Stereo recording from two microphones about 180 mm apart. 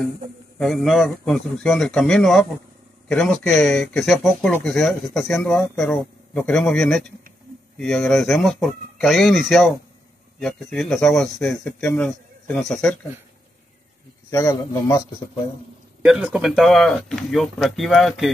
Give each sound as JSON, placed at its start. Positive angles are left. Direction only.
{"t": 0.6, "sound": "speech", "side_deg": 0}
{"t": 14.3, "sound": "speech", "side_deg": 15}
{"t": 16.0, "sound": "speech", "side_deg": -5}